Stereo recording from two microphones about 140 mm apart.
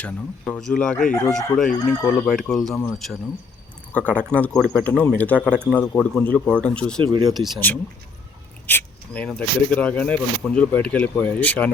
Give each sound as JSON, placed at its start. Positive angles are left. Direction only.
{"t": 0.0, "sound": "speech", "side_deg": 5}
{"t": 7.0, "sound": "speech", "side_deg": -35}
{"t": 7.3, "sound": "speech", "side_deg": 0}
{"t": 8.6, "sound": "speech", "side_deg": 10}